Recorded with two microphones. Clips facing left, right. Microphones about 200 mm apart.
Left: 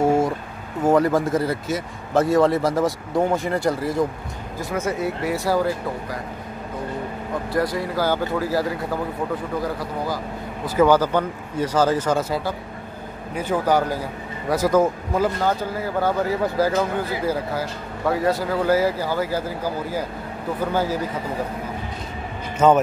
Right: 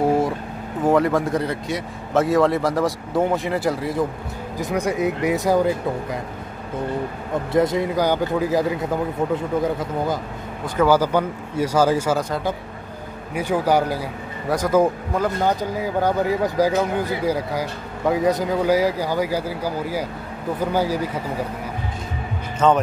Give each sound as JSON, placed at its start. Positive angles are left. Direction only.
{"t": 0.0, "sound": "a sound", "side_deg": 0}
{"t": 0.8, "sound": "a man's voice", "side_deg": 0}
{"t": 4.6, "sound": "speech", "side_deg": -15}
{"t": 7.5, "sound": "speech", "side_deg": -20}
{"t": 10.9, "sound": "speech", "side_deg": -10}
{"t": 13.3, "sound": "a man's voice", "side_deg": -10}
{"t": 15.4, "sound": "speech", "side_deg": -15}
{"t": 22.6, "sound": "speech", "side_deg": 10}